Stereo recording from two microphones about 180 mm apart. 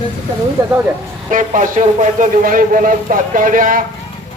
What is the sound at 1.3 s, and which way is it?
A man's voice, 45° right (ahead or behind).